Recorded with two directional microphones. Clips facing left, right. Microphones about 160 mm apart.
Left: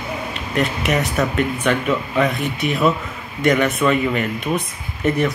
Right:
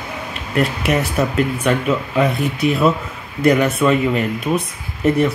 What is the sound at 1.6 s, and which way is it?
Speech, 5° right (ahead or behind).